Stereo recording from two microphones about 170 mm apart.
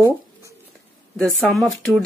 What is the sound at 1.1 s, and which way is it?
Speech, 5° left (ahead or behind).